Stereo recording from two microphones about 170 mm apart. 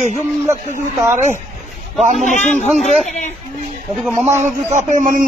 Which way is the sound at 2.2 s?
45° left (ahead or behind).